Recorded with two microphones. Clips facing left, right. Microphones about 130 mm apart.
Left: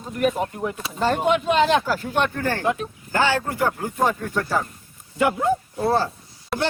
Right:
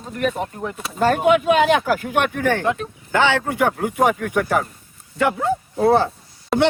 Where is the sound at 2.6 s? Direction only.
5° left (ahead or behind).